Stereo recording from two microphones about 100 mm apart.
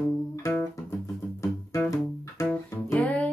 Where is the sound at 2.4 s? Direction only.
15° left (ahead or behind).